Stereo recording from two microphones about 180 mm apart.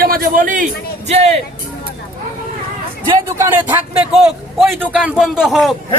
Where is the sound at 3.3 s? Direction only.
15° right (ahead or behind).